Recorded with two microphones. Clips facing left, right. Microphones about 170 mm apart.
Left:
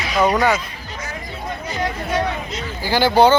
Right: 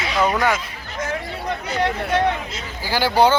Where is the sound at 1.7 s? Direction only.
65° right (ahead or behind).